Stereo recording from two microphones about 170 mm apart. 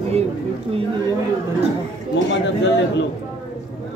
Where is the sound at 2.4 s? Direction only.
90° left.